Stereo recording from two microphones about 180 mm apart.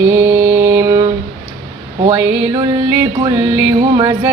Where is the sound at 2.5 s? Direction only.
20° right (ahead or behind).